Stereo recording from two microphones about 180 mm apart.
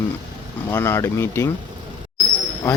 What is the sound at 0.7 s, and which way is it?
Speech, 15° left (ahead or behind).